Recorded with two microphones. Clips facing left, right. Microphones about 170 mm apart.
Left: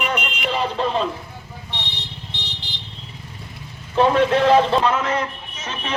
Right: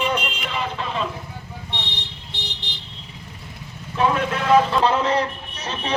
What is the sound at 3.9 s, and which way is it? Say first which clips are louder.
Speech: left 5 dB; 30° left (ahead or behind).